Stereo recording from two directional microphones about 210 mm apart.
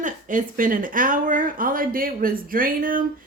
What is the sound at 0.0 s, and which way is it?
Speech, 40° right (ahead or behind).